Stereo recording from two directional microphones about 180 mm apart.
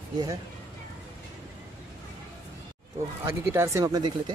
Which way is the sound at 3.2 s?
15° right (ahead or behind).